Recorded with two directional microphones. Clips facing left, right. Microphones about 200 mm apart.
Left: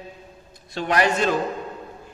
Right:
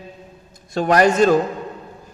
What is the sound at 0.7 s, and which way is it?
Speech, 45° right (ahead or behind).